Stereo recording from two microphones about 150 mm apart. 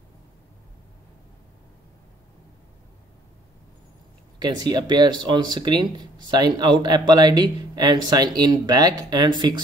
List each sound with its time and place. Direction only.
4.4 s speech: 30° right (ahead or behind)